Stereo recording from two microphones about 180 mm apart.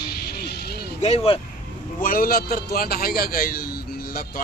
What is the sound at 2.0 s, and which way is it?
A man's voice, 50° left (ahead or behind).